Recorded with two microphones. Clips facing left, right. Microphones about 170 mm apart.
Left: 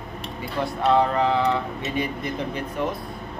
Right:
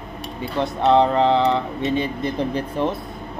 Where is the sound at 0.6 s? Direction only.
20° right (ahead or behind).